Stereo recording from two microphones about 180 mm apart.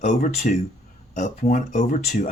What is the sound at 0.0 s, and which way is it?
Speech, 45° left (ahead or behind).